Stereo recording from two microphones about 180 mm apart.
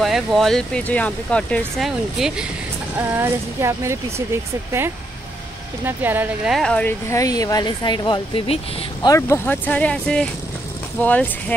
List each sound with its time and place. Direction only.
0.0 s speech: centre (ahead or behind)
3.0 s speech: 10° right (ahead or behind)
5.9 s speech: 10° right (ahead or behind); by 8.5 s 30° left (ahead or behind)
9.0 s speech: 15° left (ahead or behind)